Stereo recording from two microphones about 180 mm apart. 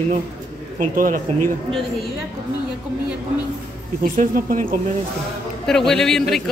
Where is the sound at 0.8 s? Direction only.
50° right (ahead or behind).